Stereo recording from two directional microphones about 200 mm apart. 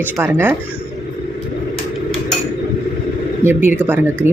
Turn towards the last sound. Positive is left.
turn(degrees=-10)  # may be behind; listen again after turning